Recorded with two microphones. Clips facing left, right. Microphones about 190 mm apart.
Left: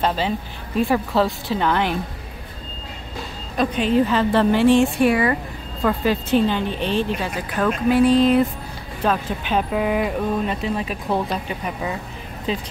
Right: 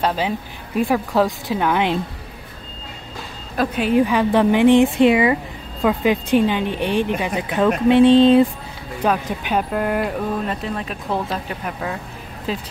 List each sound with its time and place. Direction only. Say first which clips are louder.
0.0 s speech: right 1 dB; 10° right (ahead or behind)
1.2 s speech: right 1 dB; 10° right (ahead or behind)
3.5 s speech: right 1 dB; 10° right (ahead or behind); by 8.5 s 25° right (ahead or behind)
9.0 s speech: right 1 dB; 10° right (ahead or behind)
9.7 s speech: even; centre (ahead or behind)